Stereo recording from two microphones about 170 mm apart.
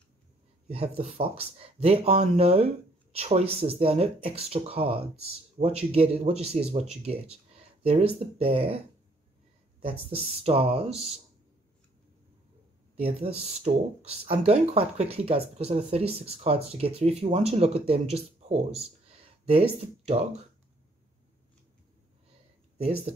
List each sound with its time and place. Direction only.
0.7 s speech: 35° right (ahead or behind)
12.9 s speech: 35° right (ahead or behind)